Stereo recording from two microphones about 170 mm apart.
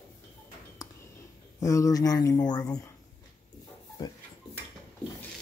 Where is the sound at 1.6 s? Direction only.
20° left (ahead or behind).